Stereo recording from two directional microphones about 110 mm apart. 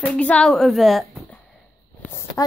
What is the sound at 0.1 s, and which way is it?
Speech, 10° left (ahead or behind).